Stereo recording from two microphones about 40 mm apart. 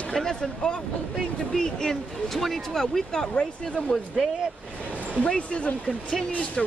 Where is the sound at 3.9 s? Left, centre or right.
Centre.